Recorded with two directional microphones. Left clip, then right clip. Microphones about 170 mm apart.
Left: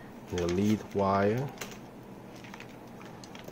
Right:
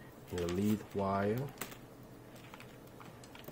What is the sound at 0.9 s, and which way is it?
Speech, 25° left (ahead or behind).